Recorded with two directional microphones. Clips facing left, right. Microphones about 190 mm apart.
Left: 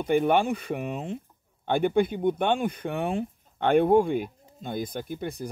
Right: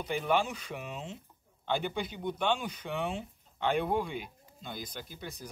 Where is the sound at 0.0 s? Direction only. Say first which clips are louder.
Left 8 dB; 55° left (ahead or behind).